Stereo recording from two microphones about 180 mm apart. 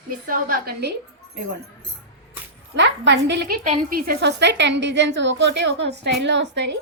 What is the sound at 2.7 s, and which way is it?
Speech, 80° right.